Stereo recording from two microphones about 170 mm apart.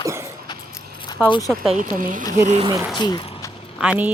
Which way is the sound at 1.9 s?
55° right (ahead or behind).